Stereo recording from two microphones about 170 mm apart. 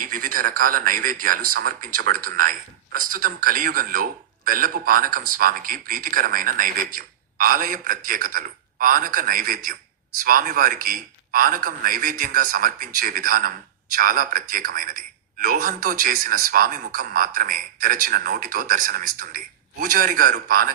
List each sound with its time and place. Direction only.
0.0 s a man's voice: 50° right (ahead or behind)